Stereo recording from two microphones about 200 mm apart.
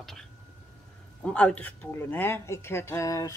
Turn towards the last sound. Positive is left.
turn(degrees=15)  # may be behind; listen again after turning